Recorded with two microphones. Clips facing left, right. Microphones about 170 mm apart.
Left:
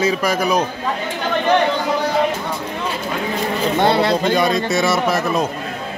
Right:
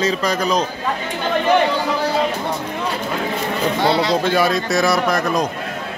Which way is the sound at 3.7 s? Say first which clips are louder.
Left 3 dB; 55° left (ahead or behind).